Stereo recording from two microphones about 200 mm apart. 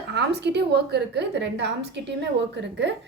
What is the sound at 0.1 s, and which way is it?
A woman's voice, 55° right (ahead or behind).